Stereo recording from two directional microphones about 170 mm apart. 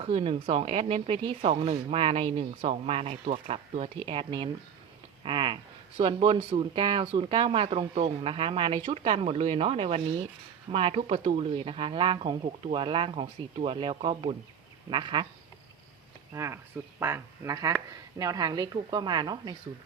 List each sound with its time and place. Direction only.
0.0 s speech: 35° right (ahead or behind)
16.3 s speech: 15° right (ahead or behind)